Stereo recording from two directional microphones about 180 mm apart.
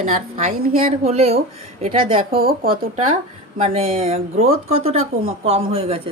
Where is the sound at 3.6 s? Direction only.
35° right (ahead or behind).